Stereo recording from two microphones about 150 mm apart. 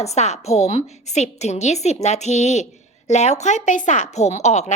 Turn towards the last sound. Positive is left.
turn(degrees=50)  # may be behind; listen again after turning